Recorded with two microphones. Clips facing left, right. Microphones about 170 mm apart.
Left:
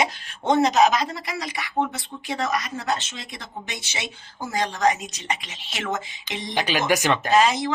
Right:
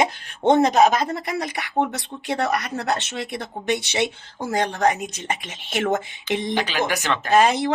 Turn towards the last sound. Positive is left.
turn(degrees=-60)  # may be behind; listen again after turning